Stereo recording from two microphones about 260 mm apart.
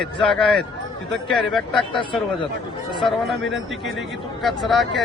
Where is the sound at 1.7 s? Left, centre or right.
Centre.